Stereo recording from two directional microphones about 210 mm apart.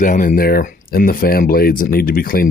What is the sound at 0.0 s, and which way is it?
Speech, 40° left (ahead or behind).